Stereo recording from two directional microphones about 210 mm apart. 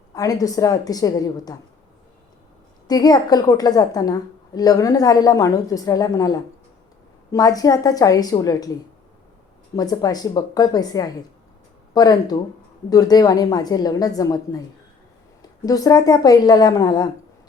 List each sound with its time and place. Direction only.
0.1 s a woman's voice: 15° left (ahead or behind)
2.8 s a woman's voice: 20° left (ahead or behind)